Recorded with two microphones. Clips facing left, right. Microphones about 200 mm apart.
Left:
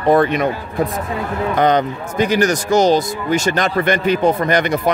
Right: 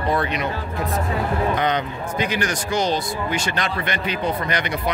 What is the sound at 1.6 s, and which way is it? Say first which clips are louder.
Speech: left 7 dB; 45° left (ahead or behind).